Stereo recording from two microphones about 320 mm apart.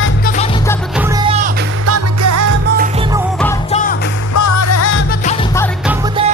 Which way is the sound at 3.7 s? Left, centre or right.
Left.